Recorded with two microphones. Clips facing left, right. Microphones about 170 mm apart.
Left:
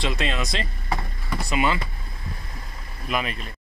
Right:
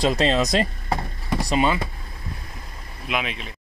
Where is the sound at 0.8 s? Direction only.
35° right (ahead or behind).